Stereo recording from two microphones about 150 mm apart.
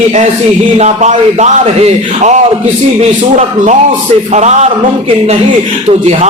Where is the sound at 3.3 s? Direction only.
50° right (ahead or behind).